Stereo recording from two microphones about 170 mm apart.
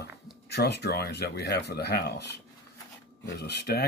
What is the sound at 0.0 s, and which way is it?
Speech, 75° left (ahead or behind).